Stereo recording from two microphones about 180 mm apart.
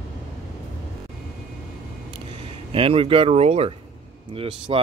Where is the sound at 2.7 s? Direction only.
30° right (ahead or behind).